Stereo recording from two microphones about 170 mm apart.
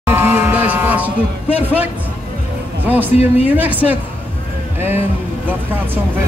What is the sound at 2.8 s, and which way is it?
Speech, 10° right (ahead or behind).